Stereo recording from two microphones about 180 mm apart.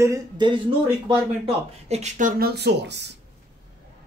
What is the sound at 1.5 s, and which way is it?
Speech, 35° right (ahead or behind).